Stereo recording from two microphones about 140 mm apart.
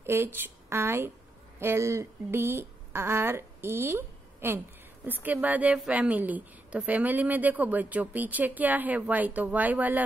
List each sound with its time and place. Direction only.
0.0 s a woman's voice: 15° right (ahead or behind)